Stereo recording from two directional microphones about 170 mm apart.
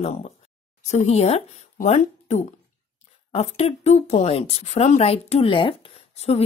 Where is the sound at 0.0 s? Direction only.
40° left (ahead or behind).